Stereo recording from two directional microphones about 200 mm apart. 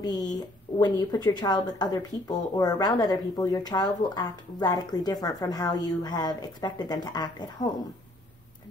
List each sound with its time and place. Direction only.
0.0 s speech: 20° left (ahead or behind)